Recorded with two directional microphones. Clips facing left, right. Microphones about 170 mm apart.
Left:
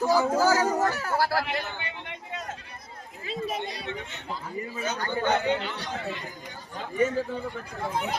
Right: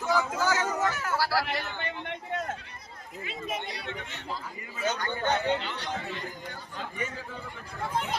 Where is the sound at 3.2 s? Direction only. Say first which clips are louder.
Left 5 dB; 35° left (ahead or behind).